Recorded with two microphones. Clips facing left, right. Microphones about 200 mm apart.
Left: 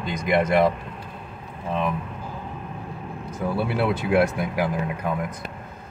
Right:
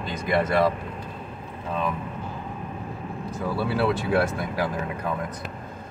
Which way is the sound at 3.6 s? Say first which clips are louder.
Right 1 dB; 20° left (ahead or behind).